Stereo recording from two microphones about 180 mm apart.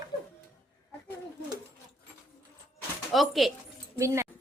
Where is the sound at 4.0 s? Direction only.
15° right (ahead or behind).